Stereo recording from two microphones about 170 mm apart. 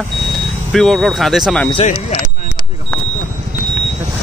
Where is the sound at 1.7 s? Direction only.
35° left (ahead or behind).